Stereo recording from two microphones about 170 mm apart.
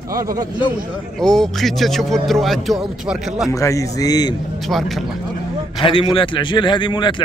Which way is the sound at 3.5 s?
20° left (ahead or behind).